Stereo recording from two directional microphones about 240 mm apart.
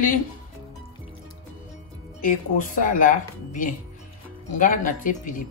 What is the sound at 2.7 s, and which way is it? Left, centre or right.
Speech, left.